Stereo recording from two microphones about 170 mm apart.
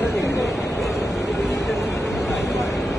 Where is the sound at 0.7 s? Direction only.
Centre (ahead or behind).